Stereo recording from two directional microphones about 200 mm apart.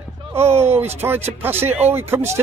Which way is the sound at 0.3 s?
10° right (ahead or behind).